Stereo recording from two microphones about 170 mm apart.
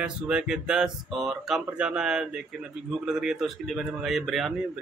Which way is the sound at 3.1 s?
5° right (ahead or behind).